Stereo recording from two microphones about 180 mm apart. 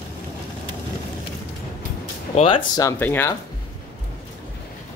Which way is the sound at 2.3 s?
30° left (ahead or behind).